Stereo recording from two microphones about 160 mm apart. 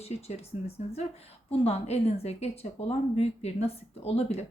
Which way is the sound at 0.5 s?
45° left (ahead or behind).